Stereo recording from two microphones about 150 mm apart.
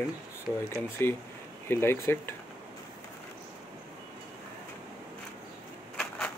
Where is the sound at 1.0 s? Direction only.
15° left (ahead or behind).